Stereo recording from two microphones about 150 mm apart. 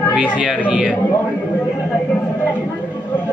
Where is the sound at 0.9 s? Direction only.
10° left (ahead or behind).